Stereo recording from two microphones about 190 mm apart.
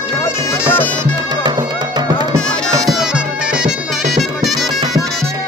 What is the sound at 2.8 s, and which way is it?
Music, 5° right (ahead or behind).